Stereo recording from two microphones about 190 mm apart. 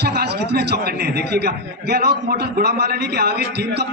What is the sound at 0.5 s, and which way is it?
A man's voice, 60° right (ahead or behind).